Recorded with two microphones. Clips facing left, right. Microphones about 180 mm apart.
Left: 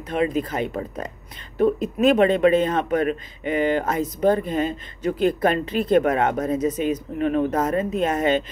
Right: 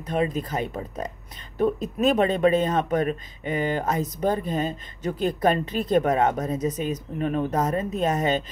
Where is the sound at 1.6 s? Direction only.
40° right (ahead or behind).